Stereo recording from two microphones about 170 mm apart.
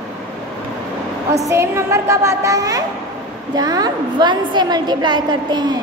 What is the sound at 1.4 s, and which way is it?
A woman's voice, 15° right (ahead or behind).